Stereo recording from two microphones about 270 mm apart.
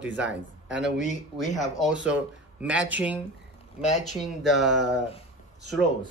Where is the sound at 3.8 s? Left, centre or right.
Left.